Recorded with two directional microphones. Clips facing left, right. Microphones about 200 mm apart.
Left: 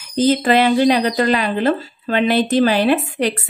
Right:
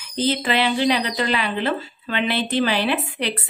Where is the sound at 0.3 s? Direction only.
45° left (ahead or behind).